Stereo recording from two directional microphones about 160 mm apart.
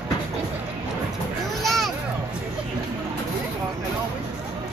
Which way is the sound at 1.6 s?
Centre (ahead or behind).